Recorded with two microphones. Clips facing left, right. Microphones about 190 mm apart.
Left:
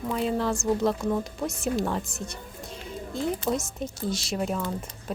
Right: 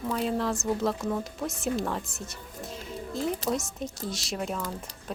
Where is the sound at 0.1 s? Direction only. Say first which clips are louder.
Left 2 dB; centre (ahead or behind).